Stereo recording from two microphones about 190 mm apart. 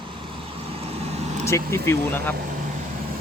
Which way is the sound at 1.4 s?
15° left (ahead or behind).